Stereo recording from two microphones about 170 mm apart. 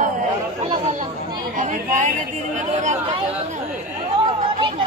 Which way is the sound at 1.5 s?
45° right (ahead or behind).